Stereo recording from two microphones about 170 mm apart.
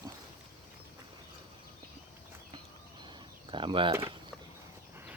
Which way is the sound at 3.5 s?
30° right (ahead or behind).